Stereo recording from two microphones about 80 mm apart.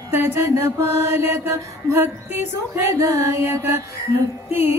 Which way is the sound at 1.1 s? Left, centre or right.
Right.